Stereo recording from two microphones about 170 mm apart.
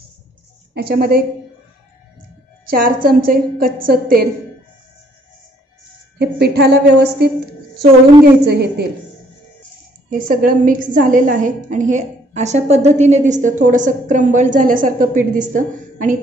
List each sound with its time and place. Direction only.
0.7 s a woman's voice: 65° right (ahead or behind)
2.7 s a woman's voice: 60° right (ahead or behind)
6.1 s a woman's voice: 70° right (ahead or behind)
8.5 s a woman's voice: 75° right (ahead or behind)
10.0 s a woman's voice: 55° right (ahead or behind)